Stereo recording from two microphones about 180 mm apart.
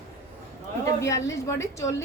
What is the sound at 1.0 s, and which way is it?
Speech, 15° left (ahead or behind).